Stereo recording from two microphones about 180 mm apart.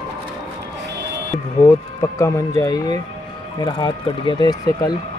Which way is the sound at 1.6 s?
15° left (ahead or behind).